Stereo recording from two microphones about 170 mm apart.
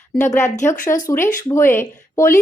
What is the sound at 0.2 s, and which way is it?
A woman's voice, 15° left (ahead or behind).